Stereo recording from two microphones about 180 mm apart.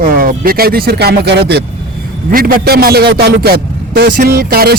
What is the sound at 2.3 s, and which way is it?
A man's voice, 50° right (ahead or behind).